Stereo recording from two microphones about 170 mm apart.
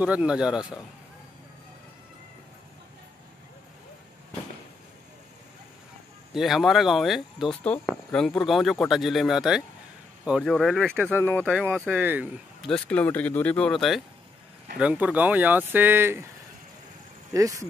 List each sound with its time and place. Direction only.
0.0 s speech: 5° right (ahead or behind)
6.3 s speech: centre (ahead or behind)
11.9 s speech: 10° right (ahead or behind)
12.6 s speech: 5° left (ahead or behind); by 16.3 s 15° right (ahead or behind)
17.3 s speech: 20° right (ahead or behind)